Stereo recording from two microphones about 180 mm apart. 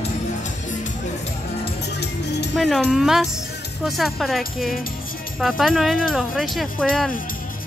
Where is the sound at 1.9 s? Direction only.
70° left (ahead or behind).